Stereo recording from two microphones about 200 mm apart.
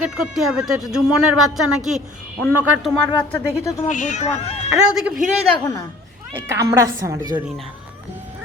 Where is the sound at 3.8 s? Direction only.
40° left (ahead or behind).